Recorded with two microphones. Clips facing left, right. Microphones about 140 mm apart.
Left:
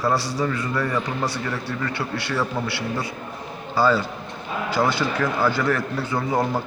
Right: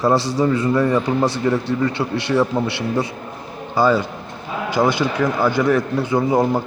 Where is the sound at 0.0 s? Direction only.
25° right (ahead or behind).